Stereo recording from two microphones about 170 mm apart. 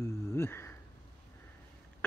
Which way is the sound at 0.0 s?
15° left (ahead or behind).